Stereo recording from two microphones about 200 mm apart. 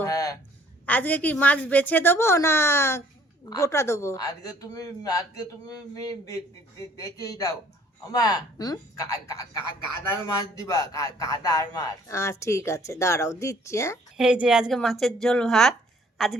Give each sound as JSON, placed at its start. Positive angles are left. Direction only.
{"t": 0.0, "sound": "a sound", "side_deg": 15}
{"t": 0.9, "sound": "speech", "side_deg": 10}
{"t": 14.2, "sound": "a woman's voice", "side_deg": -5}